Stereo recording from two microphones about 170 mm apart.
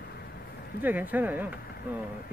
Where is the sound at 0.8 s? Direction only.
10° right (ahead or behind).